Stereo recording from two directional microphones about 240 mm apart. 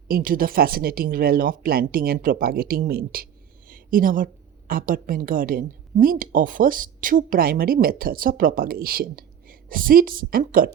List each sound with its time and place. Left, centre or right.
0.1 s a woman's voice: right
3.7 s a sound: right
4.7 s a woman's voice: right